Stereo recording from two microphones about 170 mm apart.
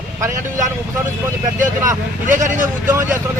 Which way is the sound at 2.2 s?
50° right (ahead or behind).